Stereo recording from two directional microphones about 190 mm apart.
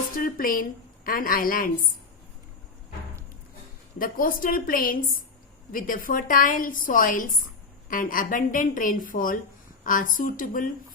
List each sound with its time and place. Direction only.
0.2 s a woman's voice: 50° left (ahead or behind)
3.9 s a woman's voice: 50° left (ahead or behind)